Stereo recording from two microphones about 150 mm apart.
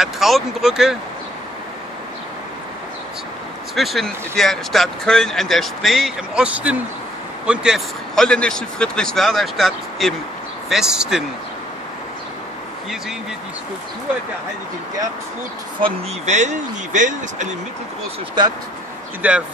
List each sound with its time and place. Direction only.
0.0 s speech: centre (ahead or behind)
3.7 s speech: centre (ahead or behind)
16.3 s speech: 50° right (ahead or behind)
19.2 s speech: 10° right (ahead or behind)